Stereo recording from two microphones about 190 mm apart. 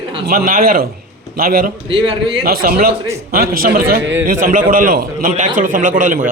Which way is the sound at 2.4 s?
50° right (ahead or behind).